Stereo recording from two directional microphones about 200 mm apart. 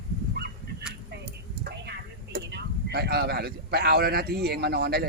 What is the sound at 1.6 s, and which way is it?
Speech, 55° right (ahead or behind).